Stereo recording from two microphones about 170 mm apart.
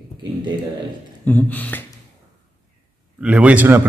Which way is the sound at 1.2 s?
10° left (ahead or behind).